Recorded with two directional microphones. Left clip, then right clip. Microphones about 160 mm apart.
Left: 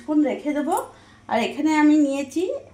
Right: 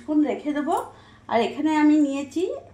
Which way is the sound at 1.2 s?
25° left (ahead or behind).